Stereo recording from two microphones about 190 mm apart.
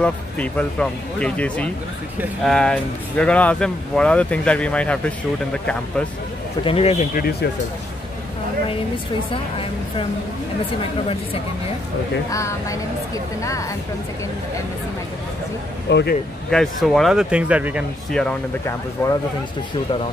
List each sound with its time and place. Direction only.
0.0 s speech: 5° left (ahead or behind)
6.6 s speech: 30° left (ahead or behind)
9.3 s a woman's voice: 30° left (ahead or behind)
12.3 s speech: 15° left (ahead or behind)
15.9 s speech: 65° left (ahead or behind)
16.4 s speech: 5° left (ahead or behind)
18.1 s speech: 5° left (ahead or behind)